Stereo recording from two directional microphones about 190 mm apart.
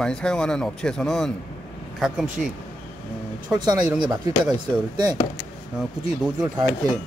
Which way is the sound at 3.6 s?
20° right (ahead or behind).